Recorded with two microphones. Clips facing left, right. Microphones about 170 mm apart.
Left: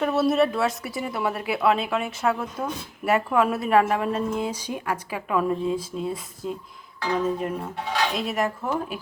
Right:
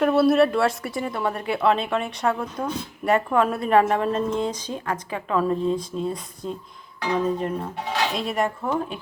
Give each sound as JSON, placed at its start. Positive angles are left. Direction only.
{"t": 0.0, "sound": "a woman's voice", "side_deg": 0}